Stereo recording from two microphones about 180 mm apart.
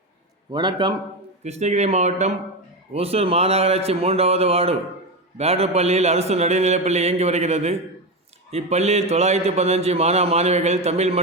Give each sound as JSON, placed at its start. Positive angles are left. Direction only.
{"t": 0.5, "sound": "a man's voice", "side_deg": -25}
{"t": 1.5, "sound": "a man's voice", "side_deg": -40}